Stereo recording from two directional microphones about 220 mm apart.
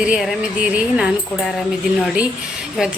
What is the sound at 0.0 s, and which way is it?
A woman's voice, 5° right (ahead or behind).